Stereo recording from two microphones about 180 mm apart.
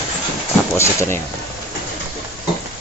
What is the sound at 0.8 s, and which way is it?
Speech, 15° left (ahead or behind).